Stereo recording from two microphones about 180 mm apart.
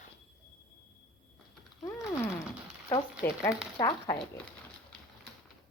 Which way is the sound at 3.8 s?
20° left (ahead or behind).